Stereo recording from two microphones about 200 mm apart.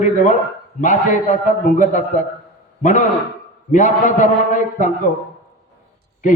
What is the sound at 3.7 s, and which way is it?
A man's voice, 40° left (ahead or behind).